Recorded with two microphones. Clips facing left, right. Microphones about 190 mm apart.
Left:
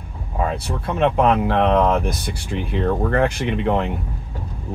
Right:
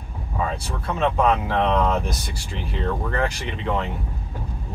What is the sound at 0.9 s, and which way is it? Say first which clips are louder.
Speech: left 3 dB; 60° left (ahead or behind).